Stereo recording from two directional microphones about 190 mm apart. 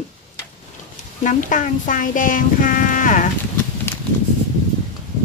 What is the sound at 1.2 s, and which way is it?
Speech, 40° left (ahead or behind).